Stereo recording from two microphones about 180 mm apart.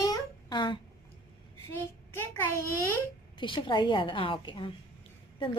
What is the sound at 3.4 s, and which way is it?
A woman's voice, 25° left (ahead or behind).